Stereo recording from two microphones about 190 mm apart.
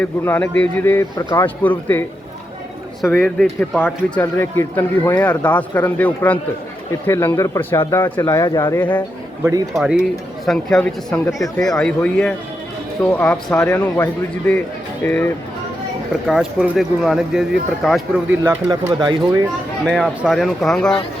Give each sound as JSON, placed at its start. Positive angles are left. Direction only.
{"t": 0.0, "sound": "speech", "side_deg": 10}
{"t": 9.7, "sound": "speech", "side_deg": -5}
{"t": 11.3, "sound": "speech", "side_deg": 15}
{"t": 11.6, "sound": "speech", "side_deg": 5}
{"t": 16.2, "sound": "speech", "side_deg": -5}
{"t": 18.4, "sound": "speech", "side_deg": -15}
{"t": 19.8, "sound": "speech", "side_deg": 5}